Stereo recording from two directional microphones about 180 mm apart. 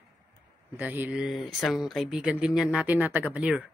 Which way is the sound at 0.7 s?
10° right (ahead or behind).